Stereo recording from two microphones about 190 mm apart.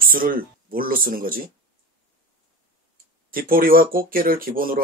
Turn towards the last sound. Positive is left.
turn(degrees=-50)  # may be behind; listen again after turning